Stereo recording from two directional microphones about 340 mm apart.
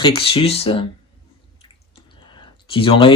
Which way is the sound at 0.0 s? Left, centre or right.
Centre.